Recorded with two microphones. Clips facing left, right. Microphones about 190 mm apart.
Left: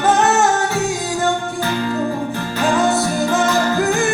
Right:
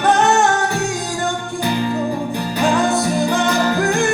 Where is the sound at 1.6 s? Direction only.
15° right (ahead or behind).